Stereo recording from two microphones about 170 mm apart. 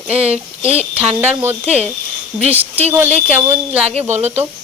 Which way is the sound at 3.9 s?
40° right (ahead or behind).